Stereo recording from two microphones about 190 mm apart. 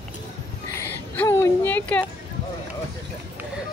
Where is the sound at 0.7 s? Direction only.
15° left (ahead or behind).